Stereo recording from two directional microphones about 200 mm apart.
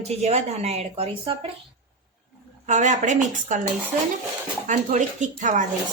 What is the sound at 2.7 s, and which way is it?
Speech, 35° right (ahead or behind).